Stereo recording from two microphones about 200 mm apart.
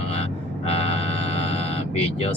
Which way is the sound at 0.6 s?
30° left (ahead or behind).